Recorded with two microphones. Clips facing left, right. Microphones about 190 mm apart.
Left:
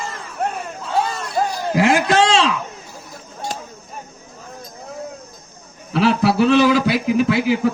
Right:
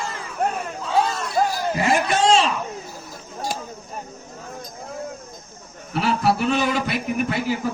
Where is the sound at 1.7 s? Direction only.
90° left.